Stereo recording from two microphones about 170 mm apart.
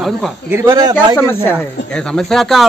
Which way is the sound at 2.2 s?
Centre (ahead or behind).